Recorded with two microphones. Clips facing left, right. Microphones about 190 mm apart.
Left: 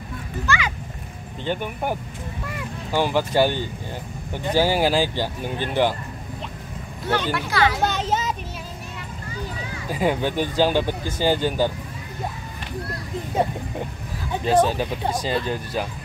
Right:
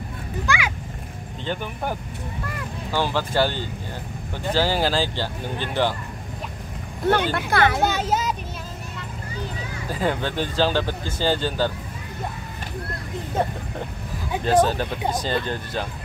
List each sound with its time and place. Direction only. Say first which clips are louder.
0.5 s a child's voice: left 1 dB; 10° right (ahead or behind)
1.4 s speech: left 2 dB; 10° left (ahead or behind)
7.1 s speech: right 3 dB; 55° right (ahead or behind)
7.8 s a child's voice: right 1 dB; 5° right (ahead or behind)
9.8 s speech: left 2 dB; 10° left (ahead or behind)
14.4 s speech: even; 5° left (ahead or behind)